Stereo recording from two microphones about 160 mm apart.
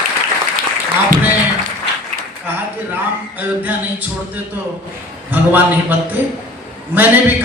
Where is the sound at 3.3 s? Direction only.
10° right (ahead or behind).